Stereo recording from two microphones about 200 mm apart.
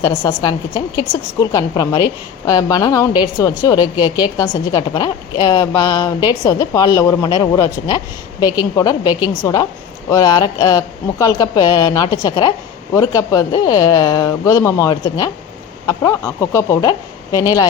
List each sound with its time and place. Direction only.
0.0 s a woman's voice: 15° left (ahead or behind)